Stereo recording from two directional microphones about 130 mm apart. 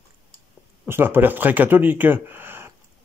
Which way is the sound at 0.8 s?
15° right (ahead or behind).